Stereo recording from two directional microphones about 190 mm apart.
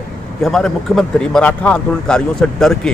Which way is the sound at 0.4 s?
Centre (ahead or behind).